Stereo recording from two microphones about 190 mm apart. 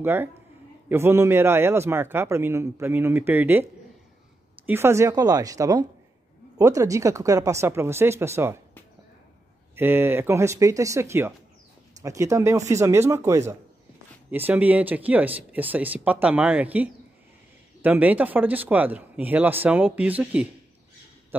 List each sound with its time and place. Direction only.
0.0 s a man's voice: 10° right (ahead or behind)
4.6 s a man's voice: 15° right (ahead or behind)
9.8 s a man's voice: 10° right (ahead or behind)